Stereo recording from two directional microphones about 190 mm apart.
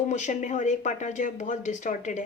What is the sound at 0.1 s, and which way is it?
Speech, 40° left (ahead or behind).